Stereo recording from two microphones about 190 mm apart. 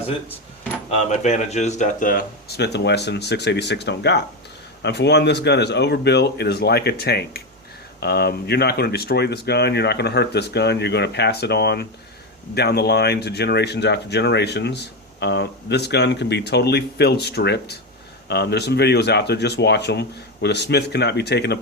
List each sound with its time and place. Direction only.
0.9 s speech: 35° left (ahead or behind); by 21.6 s 60° left (ahead or behind)